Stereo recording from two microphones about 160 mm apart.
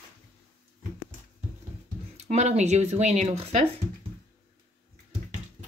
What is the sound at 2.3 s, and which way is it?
Speech, 45° right (ahead or behind).